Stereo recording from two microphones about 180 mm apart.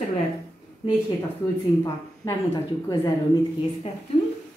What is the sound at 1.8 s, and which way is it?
Speech, 20° left (ahead or behind).